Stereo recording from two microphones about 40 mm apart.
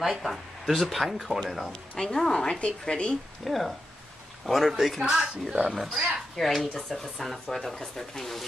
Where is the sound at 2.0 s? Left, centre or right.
Centre.